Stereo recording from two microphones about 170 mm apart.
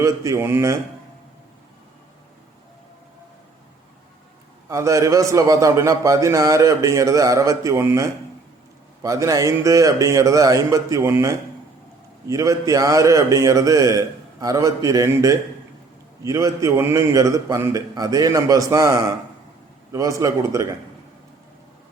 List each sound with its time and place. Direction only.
0.0 s speech: 20° right (ahead or behind)
4.7 s a man's voice: 20° right (ahead or behind)